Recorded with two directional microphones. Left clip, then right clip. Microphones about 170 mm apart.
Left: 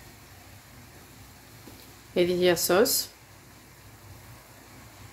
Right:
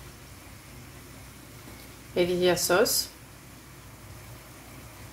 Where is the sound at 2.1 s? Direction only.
50° left (ahead or behind).